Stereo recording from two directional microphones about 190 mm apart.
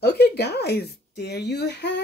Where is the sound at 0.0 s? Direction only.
60° left (ahead or behind).